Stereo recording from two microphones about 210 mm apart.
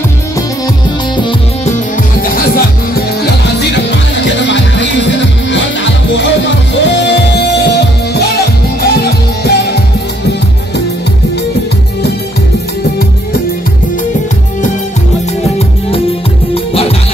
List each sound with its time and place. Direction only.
2.2 s music: 45° left (ahead or behind)
3.5 s music: 55° left (ahead or behind)